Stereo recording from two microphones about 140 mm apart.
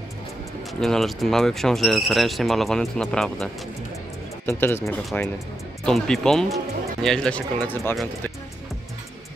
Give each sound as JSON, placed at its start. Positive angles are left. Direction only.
{"t": 0.7, "sound": "speech", "side_deg": 5}
{"t": 4.5, "sound": "speech", "side_deg": 15}
{"t": 5.9, "sound": "speech", "side_deg": 5}